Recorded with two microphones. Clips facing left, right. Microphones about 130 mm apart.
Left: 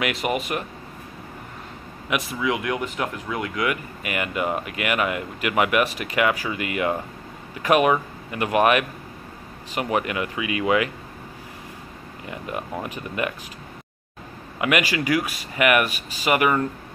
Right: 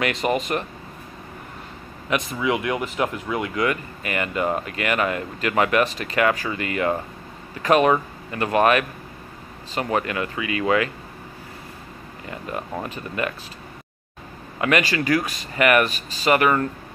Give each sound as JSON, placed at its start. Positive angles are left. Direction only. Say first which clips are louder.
{"t": 0.0, "sound": "speech", "louder": "right 2 dB", "side_deg": 5}
{"t": 2.0, "sound": "speech", "louder": "right 2 dB", "side_deg": 5}
{"t": 12.3, "sound": "speech", "louder": "even", "side_deg": 15}
{"t": 14.6, "sound": "speech", "louder": "right 1 dB", "side_deg": 10}